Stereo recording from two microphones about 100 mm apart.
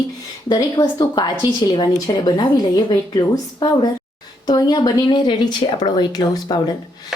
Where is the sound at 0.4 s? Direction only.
45° left (ahead or behind).